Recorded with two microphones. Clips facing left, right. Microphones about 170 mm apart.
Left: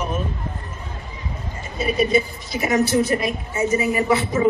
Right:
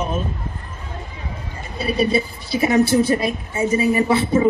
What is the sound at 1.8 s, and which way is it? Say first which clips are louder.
A woman's voice: even; 35° right (ahead or behind).